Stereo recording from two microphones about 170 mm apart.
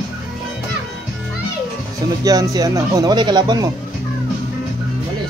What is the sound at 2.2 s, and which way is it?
Speech, 20° right (ahead or behind).